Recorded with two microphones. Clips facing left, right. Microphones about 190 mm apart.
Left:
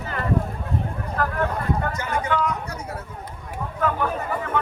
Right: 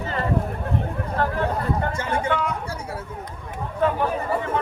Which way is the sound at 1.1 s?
30° right (ahead or behind).